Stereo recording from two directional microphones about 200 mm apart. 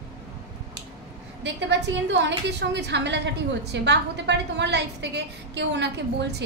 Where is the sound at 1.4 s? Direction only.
60° right (ahead or behind).